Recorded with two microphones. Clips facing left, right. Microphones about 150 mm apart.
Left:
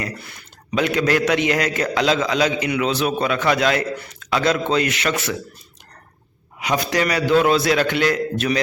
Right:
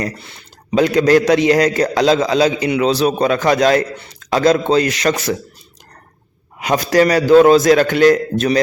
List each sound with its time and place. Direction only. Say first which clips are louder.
0.2 s a man's voice: right 1 dB; 25° right (ahead or behind)
6.6 s a man's voice: right 7 dB; 45° right (ahead or behind)